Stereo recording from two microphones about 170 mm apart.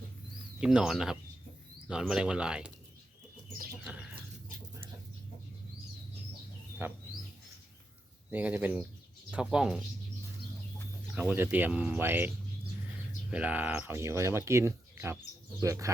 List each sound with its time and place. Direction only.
0.6 s speech: 5° right (ahead or behind)
3.8 s a sound: 5° right (ahead or behind)
6.8 s speech: 10° right (ahead or behind)
8.3 s speech: 10° right (ahead or behind)
11.1 s speech: 10° right (ahead or behind)
13.3 s speech: 10° right (ahead or behind)